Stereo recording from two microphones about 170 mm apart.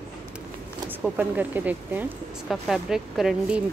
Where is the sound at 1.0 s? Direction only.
10° right (ahead or behind).